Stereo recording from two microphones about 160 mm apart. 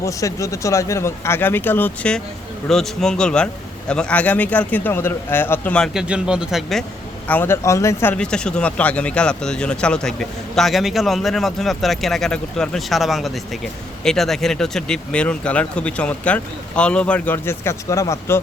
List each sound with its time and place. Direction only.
0.0 s speech: 20° left (ahead or behind); by 6.8 s centre (ahead or behind)
7.3 s speech: 15° left (ahead or behind)